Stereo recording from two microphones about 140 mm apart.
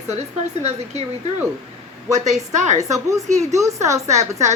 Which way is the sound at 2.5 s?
60° right (ahead or behind).